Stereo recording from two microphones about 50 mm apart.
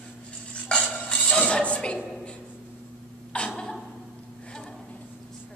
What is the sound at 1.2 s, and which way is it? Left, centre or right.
Music, centre.